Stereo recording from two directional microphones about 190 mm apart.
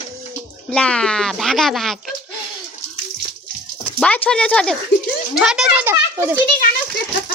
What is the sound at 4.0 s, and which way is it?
A child's voice, 5° left (ahead or behind).